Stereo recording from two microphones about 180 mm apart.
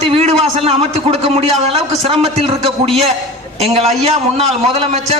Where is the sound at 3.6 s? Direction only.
35° right (ahead or behind).